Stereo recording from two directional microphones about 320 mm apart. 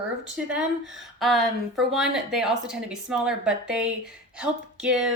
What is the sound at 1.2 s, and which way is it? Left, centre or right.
A woman's voice, centre.